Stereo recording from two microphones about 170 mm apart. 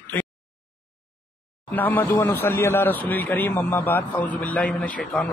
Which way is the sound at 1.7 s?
10° left (ahead or behind).